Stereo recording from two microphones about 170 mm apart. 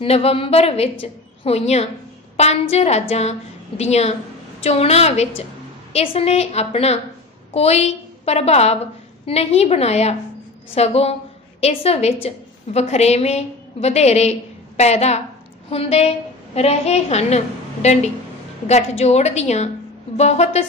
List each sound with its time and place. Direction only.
0.0 s a woman's voice: 35° left (ahead or behind)